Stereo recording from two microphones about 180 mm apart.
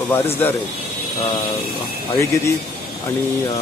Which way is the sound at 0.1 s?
10° left (ahead or behind).